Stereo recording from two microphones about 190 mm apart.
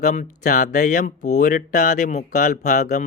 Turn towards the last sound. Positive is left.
turn(degrees=40)  # may be behind; listen again after turning